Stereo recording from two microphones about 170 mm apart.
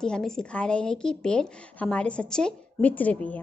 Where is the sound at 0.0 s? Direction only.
5° left (ahead or behind).